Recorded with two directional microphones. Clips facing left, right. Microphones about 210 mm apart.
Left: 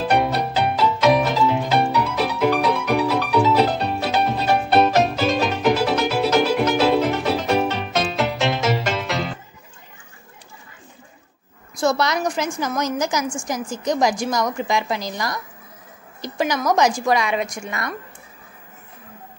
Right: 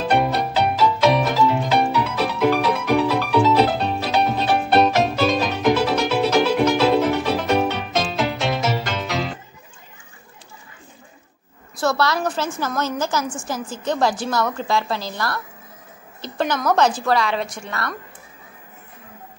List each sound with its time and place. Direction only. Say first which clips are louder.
0.1 s music: right 1 dB; centre (ahead or behind)
11.7 s a woman's voice: left 1 dB; 15° left (ahead or behind)